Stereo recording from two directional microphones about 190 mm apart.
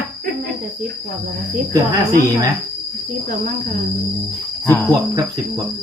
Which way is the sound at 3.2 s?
45° right (ahead or behind).